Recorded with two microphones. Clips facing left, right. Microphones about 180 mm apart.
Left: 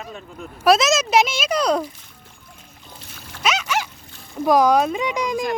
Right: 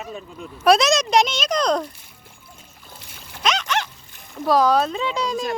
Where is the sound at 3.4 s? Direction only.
5° left (ahead or behind).